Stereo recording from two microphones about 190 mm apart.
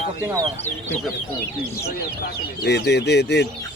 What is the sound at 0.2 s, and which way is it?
Speech, 20° right (ahead or behind).